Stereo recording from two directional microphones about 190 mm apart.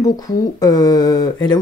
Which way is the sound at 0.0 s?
20° left (ahead or behind).